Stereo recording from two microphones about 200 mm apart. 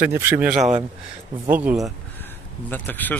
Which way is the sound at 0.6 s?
35° right (ahead or behind).